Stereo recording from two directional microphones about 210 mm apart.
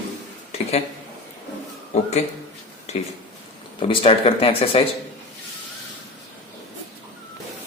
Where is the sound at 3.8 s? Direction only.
25° left (ahead or behind).